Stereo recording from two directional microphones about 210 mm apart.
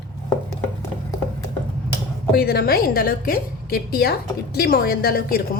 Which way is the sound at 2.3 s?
50° left (ahead or behind).